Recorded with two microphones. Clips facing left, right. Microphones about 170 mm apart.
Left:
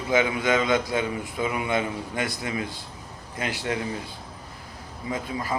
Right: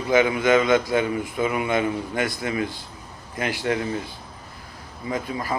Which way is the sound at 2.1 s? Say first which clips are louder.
Right 4 dB; 20° left (ahead or behind).